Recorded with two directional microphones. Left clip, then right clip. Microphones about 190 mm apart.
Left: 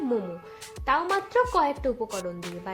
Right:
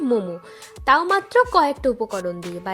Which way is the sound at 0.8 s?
40° right (ahead or behind).